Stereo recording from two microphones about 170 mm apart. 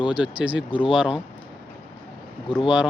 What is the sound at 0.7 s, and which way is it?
Speech, 30° left (ahead or behind).